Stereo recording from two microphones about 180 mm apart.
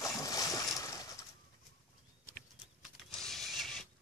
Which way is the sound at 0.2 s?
20° left (ahead or behind).